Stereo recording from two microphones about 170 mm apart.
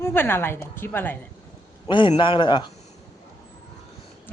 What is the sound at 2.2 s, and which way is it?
Speech, 30° left (ahead or behind).